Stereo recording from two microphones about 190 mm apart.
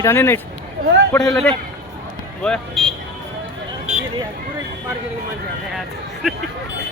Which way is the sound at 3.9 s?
5° right (ahead or behind).